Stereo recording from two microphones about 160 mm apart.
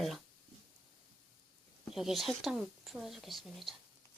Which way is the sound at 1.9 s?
Centre (ahead or behind).